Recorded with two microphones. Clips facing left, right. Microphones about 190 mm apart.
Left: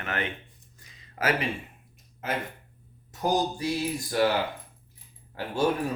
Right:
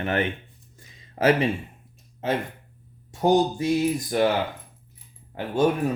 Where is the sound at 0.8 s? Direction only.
30° right (ahead or behind).